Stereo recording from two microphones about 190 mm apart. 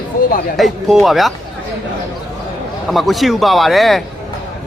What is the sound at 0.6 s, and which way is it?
Speech, centre (ahead or behind).